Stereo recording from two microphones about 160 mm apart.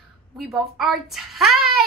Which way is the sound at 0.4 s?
Centre (ahead or behind).